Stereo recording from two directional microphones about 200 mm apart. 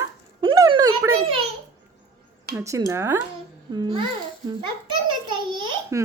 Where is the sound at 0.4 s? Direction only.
20° right (ahead or behind).